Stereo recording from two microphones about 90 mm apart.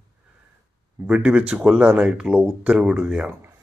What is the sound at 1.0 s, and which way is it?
Speech, 10° right (ahead or behind).